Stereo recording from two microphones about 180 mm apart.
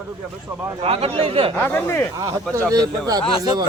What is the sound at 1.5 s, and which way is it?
Speech, 10° left (ahead or behind).